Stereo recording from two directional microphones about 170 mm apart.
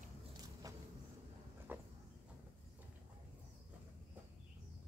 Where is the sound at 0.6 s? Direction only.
20° right (ahead or behind).